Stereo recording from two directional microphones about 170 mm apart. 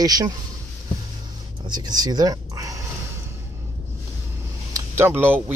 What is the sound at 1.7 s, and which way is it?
Speech, 25° right (ahead or behind).